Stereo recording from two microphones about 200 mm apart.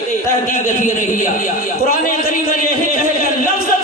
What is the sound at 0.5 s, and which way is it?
A man's voice, 40° left (ahead or behind).